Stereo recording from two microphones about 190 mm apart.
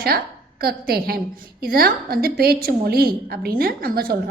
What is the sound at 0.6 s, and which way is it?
A woman's voice, 55° right (ahead or behind).